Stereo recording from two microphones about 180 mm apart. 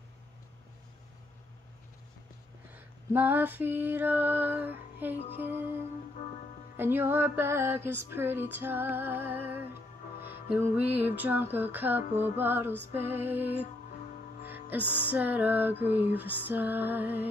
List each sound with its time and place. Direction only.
2.7 s female singing: 10° right (ahead or behind)
6.8 s female singing: 10° right (ahead or behind)
10.1 s music: 60° left (ahead or behind)
10.5 s female singing: 10° right (ahead or behind)
10.9 s a sound: 60° left (ahead or behind)
11.1 s female singing: 10° right (ahead or behind)
14.8 s music: 10° left (ahead or behind)
15.0 s female singing: 10° right (ahead or behind)